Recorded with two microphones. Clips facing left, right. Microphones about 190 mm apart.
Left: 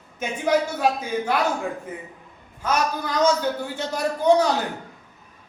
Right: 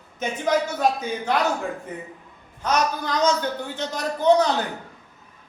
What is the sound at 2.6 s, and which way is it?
A man's voice, 10° left (ahead or behind).